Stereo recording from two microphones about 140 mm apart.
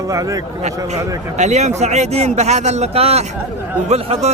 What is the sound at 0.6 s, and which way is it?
A man's voice, 55° right (ahead or behind).